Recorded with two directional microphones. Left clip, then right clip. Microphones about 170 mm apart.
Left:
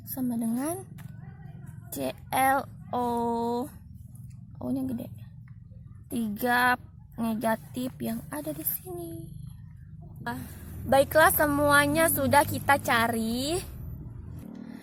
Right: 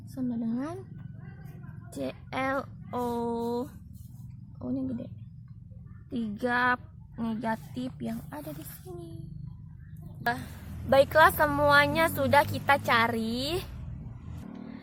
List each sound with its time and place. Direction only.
0.1 s a woman's voice: 40° left (ahead or behind)
1.9 s speech: 40° left (ahead or behind)
6.1 s speech: 40° left (ahead or behind)
10.8 s speech: 30° left (ahead or behind)